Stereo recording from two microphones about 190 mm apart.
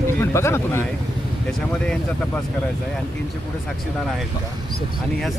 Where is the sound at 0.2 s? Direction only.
15° left (ahead or behind).